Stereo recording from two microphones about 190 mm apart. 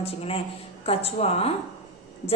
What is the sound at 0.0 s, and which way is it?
A woman's voice, 30° left (ahead or behind).